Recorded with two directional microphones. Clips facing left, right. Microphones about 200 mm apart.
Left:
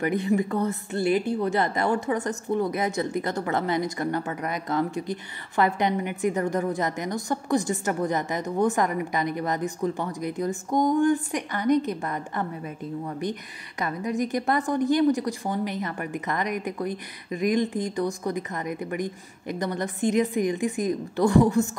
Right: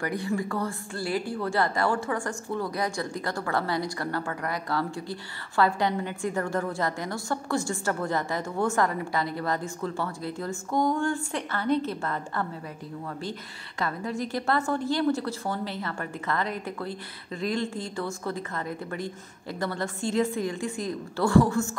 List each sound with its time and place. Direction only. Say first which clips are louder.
0.0 s a woman's voice: left 5 dB; 20° left (ahead or behind)